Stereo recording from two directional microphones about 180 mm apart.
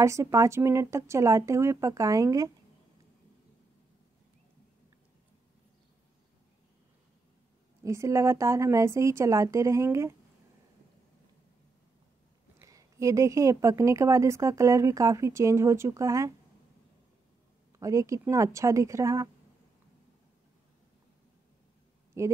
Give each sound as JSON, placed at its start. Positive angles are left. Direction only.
{"t": 0.0, "sound": "a woman's voice", "side_deg": -15}
{"t": 7.8, "sound": "a woman's voice", "side_deg": -15}
{"t": 12.5, "sound": "a woman's voice", "side_deg": -15}
{"t": 17.7, "sound": "a woman's voice", "side_deg": -15}
{"t": 22.2, "sound": "speech", "side_deg": -15}